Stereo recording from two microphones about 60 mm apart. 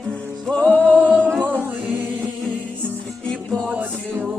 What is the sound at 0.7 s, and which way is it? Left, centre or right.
Singing, right.